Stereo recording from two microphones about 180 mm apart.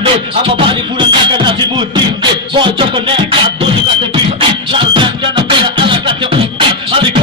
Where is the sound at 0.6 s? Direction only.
25° right (ahead or behind).